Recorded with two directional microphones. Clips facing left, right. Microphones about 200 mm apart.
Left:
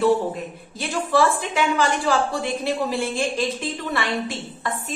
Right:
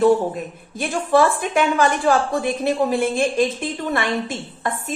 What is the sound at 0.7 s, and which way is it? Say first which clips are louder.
A woman's voice: right 3 dB; 50° right (ahead or behind).